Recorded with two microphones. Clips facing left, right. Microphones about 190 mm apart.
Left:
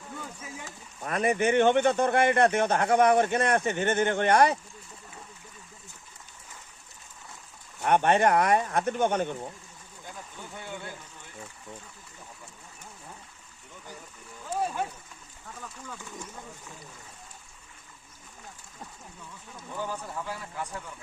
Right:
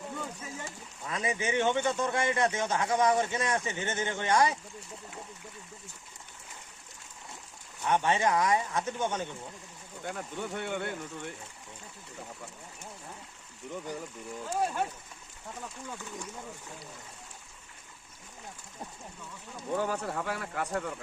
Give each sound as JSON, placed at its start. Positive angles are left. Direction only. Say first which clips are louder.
{"t": 1.0, "sound": "speech", "louder": "left 7 dB", "side_deg": 60}
{"t": 7.8, "sound": "speech", "louder": "left 5 dB", "side_deg": 60}
{"t": 10.0, "sound": "speech", "louder": "right 7 dB", "side_deg": -70}
{"t": 19.7, "sound": "speech", "louder": "right 4 dB", "side_deg": -65}